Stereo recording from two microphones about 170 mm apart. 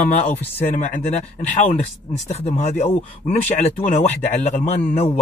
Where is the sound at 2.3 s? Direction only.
40° left (ahead or behind).